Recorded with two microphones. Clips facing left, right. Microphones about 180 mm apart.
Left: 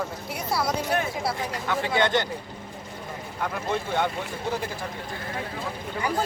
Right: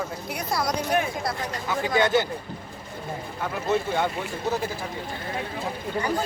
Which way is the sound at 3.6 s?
10° right (ahead or behind).